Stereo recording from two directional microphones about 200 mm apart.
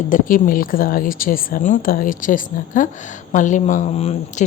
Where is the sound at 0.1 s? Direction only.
45° left (ahead or behind).